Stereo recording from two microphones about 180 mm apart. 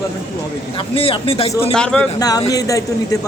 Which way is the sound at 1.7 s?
5° left (ahead or behind).